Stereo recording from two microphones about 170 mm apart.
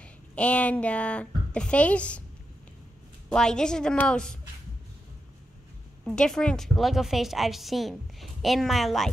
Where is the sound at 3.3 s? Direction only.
5° left (ahead or behind).